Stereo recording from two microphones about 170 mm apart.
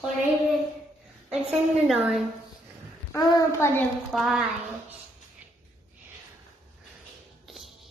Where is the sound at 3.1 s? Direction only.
20° left (ahead or behind).